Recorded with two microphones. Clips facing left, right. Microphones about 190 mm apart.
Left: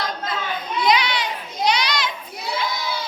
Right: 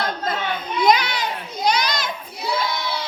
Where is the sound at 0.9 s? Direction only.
45° right (ahead or behind).